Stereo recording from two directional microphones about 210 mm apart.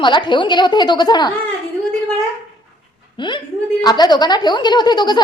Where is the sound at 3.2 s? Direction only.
20° left (ahead or behind).